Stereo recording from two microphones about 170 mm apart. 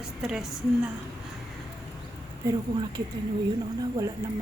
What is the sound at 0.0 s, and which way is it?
Speech, 5° right (ahead or behind).